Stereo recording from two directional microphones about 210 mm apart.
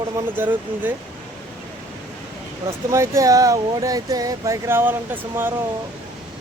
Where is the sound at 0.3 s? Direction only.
10° right (ahead or behind).